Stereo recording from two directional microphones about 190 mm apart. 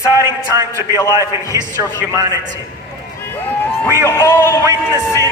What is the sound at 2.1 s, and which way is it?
Speech, 20° right (ahead or behind).